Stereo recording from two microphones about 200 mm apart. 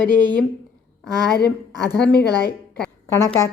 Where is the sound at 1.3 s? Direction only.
55° left (ahead or behind).